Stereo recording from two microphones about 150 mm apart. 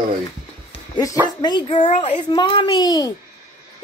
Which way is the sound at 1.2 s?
30° left (ahead or behind).